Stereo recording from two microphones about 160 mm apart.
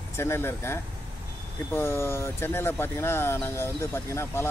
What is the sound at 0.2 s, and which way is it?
Speech, 15° left (ahead or behind).